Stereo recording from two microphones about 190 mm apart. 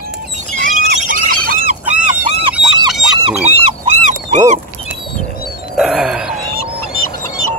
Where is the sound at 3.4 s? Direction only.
35° right (ahead or behind).